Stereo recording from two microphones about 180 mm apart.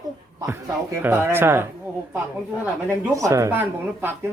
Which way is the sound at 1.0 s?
10° right (ahead or behind).